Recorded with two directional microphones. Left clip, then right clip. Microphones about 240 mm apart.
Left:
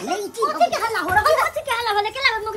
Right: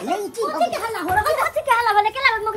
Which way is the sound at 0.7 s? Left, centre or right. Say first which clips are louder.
Left 2 dB; left.